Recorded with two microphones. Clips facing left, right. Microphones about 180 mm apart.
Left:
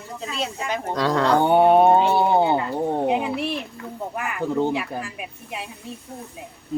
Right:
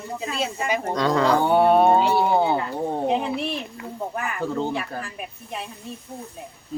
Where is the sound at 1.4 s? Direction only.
20° left (ahead or behind).